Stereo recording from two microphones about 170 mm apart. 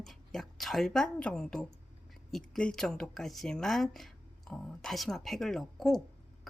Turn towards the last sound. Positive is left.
turn(degrees=0)  # may be behind; listen again after turning